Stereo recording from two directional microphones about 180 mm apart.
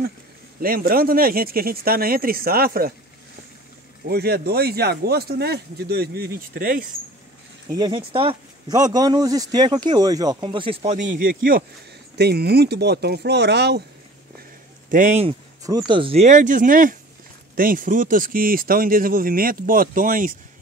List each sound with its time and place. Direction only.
0.6 s speech: 55° right (ahead or behind)
4.1 s speech: 60° right (ahead or behind)
7.7 s speech: 25° right (ahead or behind)
11.1 s speech: 50° right (ahead or behind)
12.2 s speech: 65° right (ahead or behind)
14.9 s speech: 45° right (ahead or behind)
15.9 s speech: 30° right (ahead or behind); by 20.3 s 50° right (ahead or behind)